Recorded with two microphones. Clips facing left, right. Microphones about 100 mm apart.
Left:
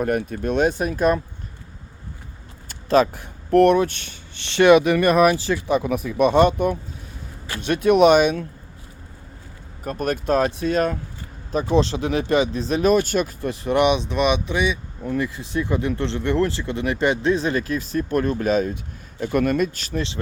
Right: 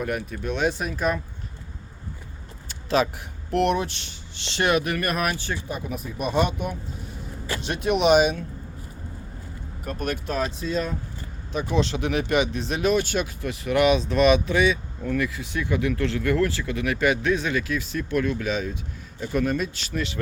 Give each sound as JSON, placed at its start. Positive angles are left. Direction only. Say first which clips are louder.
{"t": 0.0, "sound": "speech", "louder": "left 6 dB", "side_deg": 45}
{"t": 2.6, "sound": "a sound", "louder": "left 5 dB", "side_deg": 45}
{"t": 3.5, "sound": "speech", "louder": "left 8 dB", "side_deg": 50}
{"t": 5.5, "sound": "speech", "louder": "left 10 dB", "side_deg": 90}
{"t": 9.8, "sound": "speech", "louder": "left 5 dB", "side_deg": 40}
{"t": 11.5, "sound": "speech", "louder": "left 5 dB", "side_deg": 35}
{"t": 19.2, "sound": "speech", "louder": "left 5 dB", "side_deg": 60}